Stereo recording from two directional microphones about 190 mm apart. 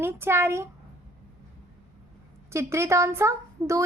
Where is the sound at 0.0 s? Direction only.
15° right (ahead or behind).